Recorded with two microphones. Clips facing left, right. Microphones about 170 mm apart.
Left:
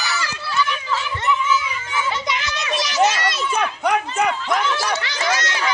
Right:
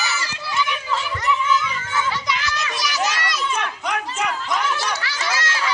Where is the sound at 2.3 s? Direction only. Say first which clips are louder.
Left 1 dB; 20° left (ahead or behind).